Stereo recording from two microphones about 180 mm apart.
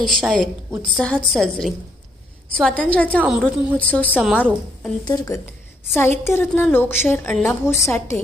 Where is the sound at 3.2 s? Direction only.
5° right (ahead or behind).